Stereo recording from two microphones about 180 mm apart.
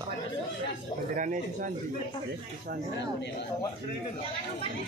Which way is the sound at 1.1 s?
45° right (ahead or behind).